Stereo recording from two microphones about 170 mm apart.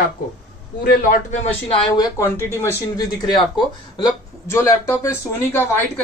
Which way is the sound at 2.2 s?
15° left (ahead or behind).